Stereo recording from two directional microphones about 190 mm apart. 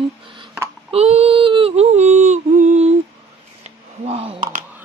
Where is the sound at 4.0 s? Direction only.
30° right (ahead or behind).